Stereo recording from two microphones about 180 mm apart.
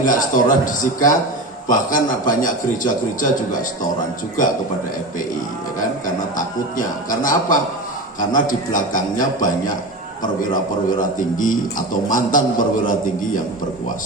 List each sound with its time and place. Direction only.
0.0 s a man's voice: 50° left (ahead or behind)
6.3 s a man's voice: 50° left (ahead or behind)